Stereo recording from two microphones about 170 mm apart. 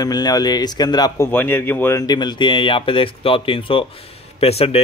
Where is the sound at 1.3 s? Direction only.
10° left (ahead or behind); by 4.8 s 35° left (ahead or behind).